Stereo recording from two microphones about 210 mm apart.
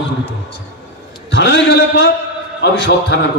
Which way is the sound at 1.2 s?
55° left (ahead or behind).